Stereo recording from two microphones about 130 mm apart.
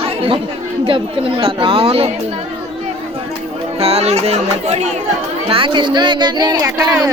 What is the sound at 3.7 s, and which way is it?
Speech, 50° right (ahead or behind).